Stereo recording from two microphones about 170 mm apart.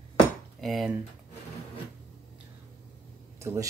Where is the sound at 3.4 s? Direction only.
15° right (ahead or behind).